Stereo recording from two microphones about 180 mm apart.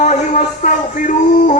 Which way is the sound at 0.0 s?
40° left (ahead or behind).